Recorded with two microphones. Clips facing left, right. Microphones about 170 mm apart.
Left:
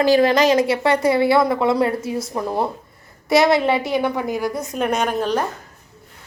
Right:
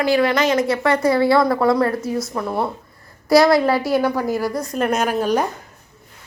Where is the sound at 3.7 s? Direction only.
Centre (ahead or behind).